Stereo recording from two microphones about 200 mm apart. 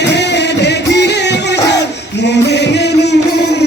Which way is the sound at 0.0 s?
60° left (ahead or behind).